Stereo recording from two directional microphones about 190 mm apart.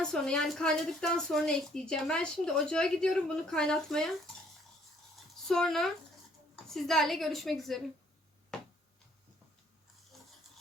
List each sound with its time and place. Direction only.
0.0 s a woman's voice: 5° left (ahead or behind)
5.5 s a woman's voice: centre (ahead or behind)